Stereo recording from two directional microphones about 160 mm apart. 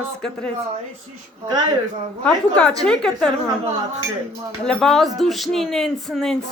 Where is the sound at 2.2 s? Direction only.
5° left (ahead or behind).